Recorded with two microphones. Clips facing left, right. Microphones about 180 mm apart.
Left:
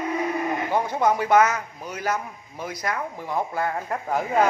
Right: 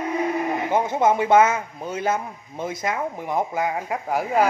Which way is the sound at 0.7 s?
20° right (ahead or behind).